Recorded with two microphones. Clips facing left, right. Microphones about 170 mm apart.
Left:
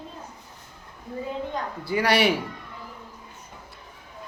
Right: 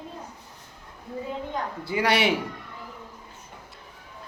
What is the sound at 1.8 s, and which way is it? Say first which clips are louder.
Speech: left 2 dB; 20° right (ahead or behind).